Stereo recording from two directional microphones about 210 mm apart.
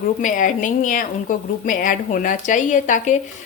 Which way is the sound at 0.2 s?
40° left (ahead or behind).